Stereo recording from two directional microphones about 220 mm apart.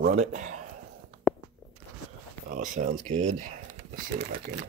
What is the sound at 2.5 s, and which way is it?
Speech, 35° right (ahead or behind).